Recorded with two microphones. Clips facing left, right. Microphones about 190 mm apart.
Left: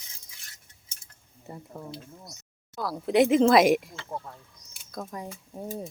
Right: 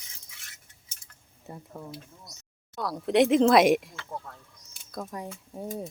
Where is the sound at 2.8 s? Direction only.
Centre (ahead or behind).